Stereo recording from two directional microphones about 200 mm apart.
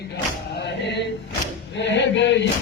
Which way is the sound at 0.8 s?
60° left (ahead or behind).